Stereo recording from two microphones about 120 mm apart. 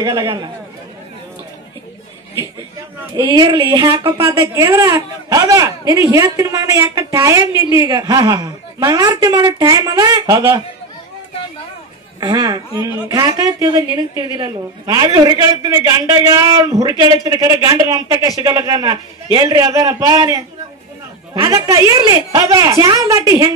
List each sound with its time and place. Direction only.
0.0 s a woman's voice: 30° right (ahead or behind)
3.2 s a woman's voice: 40° right (ahead or behind)
12.2 s a woman's voice: 35° right (ahead or behind)